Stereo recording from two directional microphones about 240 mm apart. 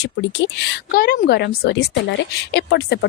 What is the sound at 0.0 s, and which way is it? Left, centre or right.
A woman's voice, left.